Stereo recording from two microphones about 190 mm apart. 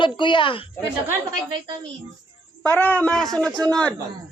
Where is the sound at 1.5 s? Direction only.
20° right (ahead or behind).